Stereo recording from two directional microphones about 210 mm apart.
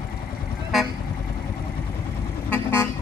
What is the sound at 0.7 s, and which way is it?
Vehicle, centre (ahead or behind).